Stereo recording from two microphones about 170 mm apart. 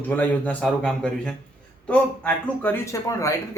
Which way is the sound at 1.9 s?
10° left (ahead or behind).